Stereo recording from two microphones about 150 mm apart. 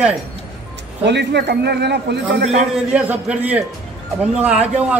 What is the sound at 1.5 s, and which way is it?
Speech, 90° right.